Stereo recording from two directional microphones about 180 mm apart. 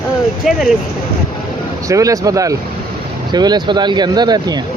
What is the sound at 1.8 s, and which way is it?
Speech, 20° right (ahead or behind).